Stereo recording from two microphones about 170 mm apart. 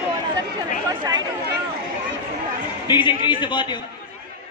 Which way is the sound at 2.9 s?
25° left (ahead or behind).